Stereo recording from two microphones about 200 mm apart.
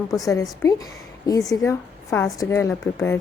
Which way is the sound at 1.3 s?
15° left (ahead or behind).